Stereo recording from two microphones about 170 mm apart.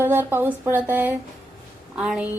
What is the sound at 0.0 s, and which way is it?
A woman's voice, 10° right (ahead or behind).